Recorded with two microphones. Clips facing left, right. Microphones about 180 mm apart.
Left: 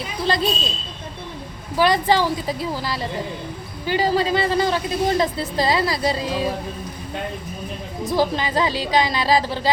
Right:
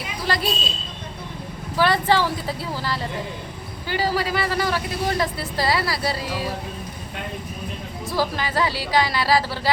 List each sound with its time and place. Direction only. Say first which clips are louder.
0.3 s speech: left 3 dB; 20° left (ahead or behind)
1.7 s a woman's voice: left 2 dB; 15° left (ahead or behind)
8.0 s speech: left 4 dB; 20° left (ahead or behind)